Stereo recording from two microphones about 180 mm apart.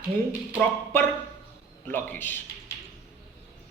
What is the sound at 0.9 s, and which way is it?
Speech, 10° left (ahead or behind).